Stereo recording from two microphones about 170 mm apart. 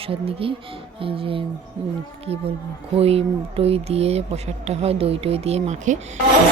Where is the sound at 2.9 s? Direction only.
35° right (ahead or behind).